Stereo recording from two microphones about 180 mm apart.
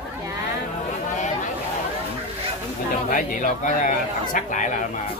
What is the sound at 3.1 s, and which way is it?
Speech, 50° left (ahead or behind).